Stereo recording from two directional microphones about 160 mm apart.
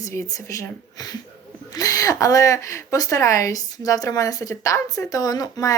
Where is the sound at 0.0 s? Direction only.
20° left (ahead or behind).